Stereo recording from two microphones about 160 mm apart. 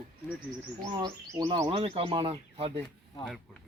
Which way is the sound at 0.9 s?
25° right (ahead or behind).